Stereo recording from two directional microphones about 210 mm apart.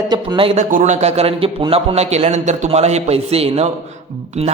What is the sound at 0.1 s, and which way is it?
A man's voice, 20° right (ahead or behind).